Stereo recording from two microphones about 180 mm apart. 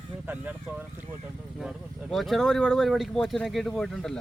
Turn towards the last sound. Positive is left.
turn(degrees=0)  # may be behind; listen again after turning